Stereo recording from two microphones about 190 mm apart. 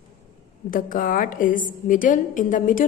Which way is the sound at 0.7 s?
45° left (ahead or behind).